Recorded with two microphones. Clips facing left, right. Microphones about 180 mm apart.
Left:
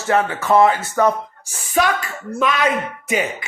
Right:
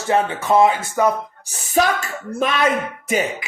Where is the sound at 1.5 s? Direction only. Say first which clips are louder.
Even; 40° right (ahead or behind).